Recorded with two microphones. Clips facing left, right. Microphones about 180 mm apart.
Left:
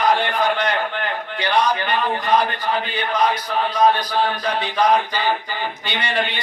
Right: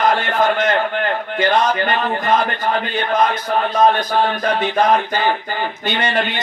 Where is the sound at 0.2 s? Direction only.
45° right (ahead or behind).